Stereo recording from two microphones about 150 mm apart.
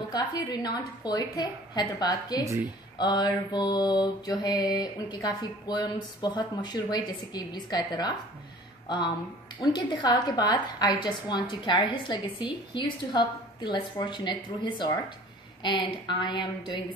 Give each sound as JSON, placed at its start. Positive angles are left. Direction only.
{"t": 0.1, "sound": "a woman's voice", "side_deg": 25}